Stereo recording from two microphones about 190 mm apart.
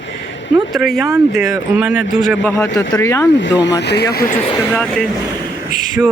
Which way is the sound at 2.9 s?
15° left (ahead or behind).